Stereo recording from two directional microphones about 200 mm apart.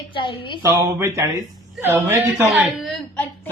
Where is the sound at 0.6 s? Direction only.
15° right (ahead or behind); by 3.5 s 5° left (ahead or behind).